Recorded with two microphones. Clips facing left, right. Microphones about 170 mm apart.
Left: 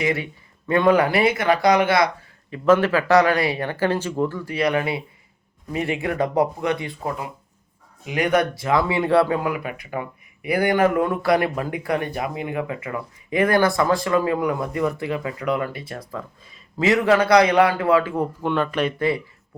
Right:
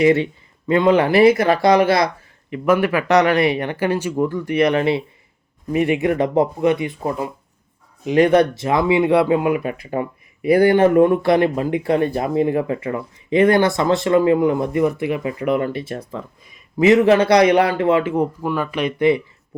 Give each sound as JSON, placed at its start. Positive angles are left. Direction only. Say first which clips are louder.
{"t": 0.0, "sound": "speech", "louder": "right 9 dB", "side_deg": -25}
{"t": 2.5, "sound": "speech", "louder": "even", "side_deg": -15}
{"t": 18.4, "sound": "speech", "louder": "even", "side_deg": -5}